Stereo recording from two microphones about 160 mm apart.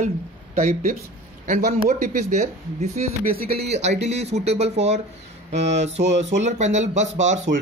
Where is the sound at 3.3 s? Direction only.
75° right (ahead or behind).